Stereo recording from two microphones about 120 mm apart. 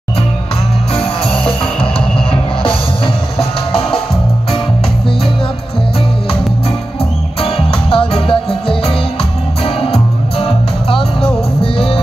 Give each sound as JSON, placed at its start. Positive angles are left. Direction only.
{"t": 0.9, "sound": "music", "side_deg": 50}
{"t": 3.3, "sound": "music", "side_deg": 50}
{"t": 7.4, "sound": "music", "side_deg": 50}